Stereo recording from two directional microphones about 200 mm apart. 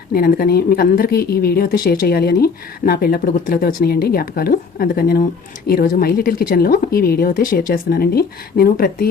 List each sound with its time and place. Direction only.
0.1 s a woman's voice: 45° left (ahead or behind)